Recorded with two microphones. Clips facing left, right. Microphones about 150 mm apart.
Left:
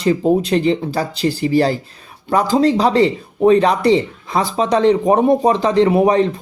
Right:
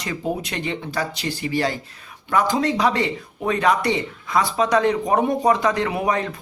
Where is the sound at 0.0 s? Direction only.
30° left (ahead or behind).